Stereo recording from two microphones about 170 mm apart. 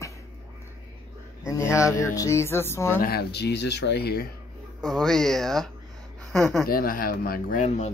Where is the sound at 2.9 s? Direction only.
65° left (ahead or behind).